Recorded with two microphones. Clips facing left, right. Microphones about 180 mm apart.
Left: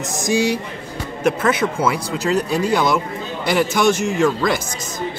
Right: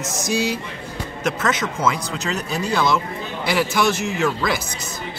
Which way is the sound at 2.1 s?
10° left (ahead or behind).